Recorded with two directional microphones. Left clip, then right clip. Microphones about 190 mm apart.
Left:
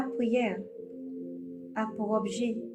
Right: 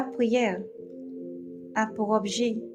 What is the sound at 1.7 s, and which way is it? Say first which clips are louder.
Speech: right 5 dB; 50° right (ahead or behind).